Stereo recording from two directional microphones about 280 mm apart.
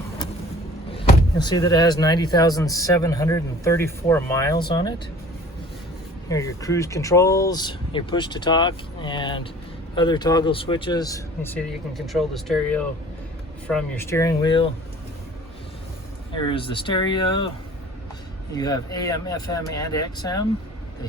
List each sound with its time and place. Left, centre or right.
0.9 s speech: centre
6.2 s speech: centre
16.3 s speech: centre
18.5 s speech: centre